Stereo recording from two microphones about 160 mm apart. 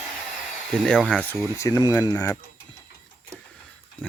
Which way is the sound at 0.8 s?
Centre (ahead or behind).